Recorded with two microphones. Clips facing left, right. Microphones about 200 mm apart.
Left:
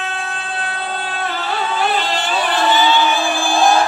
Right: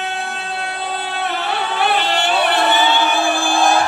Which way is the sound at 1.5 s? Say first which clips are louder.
Even; 65° right (ahead or behind).